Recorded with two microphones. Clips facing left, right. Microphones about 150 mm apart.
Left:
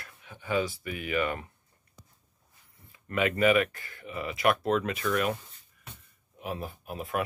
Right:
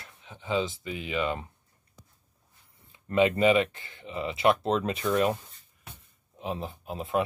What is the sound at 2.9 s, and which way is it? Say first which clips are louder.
Speech: right 5 dB; 25° right (ahead or behind).